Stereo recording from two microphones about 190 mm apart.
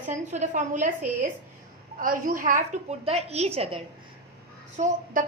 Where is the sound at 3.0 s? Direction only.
35° right (ahead or behind).